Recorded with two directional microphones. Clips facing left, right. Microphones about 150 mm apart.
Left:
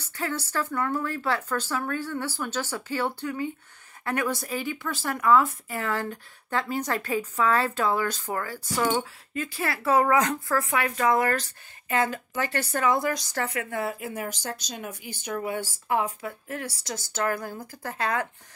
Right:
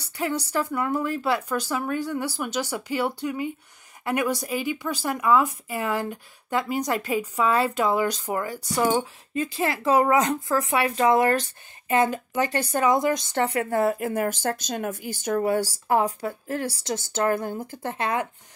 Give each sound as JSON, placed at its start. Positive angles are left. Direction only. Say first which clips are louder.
{"t": 0.0, "sound": "speech", "louder": "right 4 dB", "side_deg": -15}